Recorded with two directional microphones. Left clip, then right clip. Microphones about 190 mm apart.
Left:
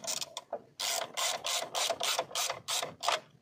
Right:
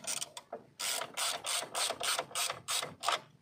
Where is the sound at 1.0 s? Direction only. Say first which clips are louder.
Left 2 dB; 10° left (ahead or behind).